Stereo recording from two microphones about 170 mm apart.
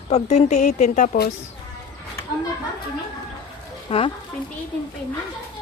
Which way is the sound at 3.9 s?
35° left (ahead or behind).